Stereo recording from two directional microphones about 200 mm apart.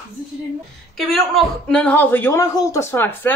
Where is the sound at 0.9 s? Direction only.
Centre (ahead or behind).